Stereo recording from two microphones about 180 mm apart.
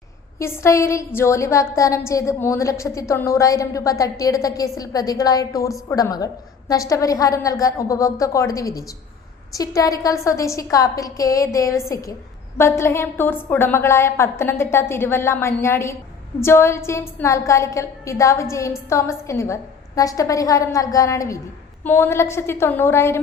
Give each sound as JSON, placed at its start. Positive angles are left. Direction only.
{"t": 0.3, "sound": "a woman's voice", "side_deg": 15}